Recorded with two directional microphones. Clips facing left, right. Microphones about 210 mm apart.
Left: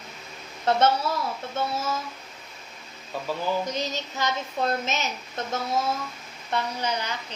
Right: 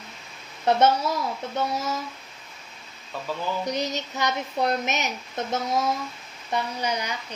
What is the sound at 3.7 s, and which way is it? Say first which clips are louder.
A woman's voice: right 2 dB; 15° right (ahead or behind).